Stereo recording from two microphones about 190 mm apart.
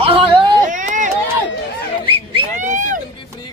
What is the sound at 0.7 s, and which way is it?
Speech, 40° right (ahead or behind).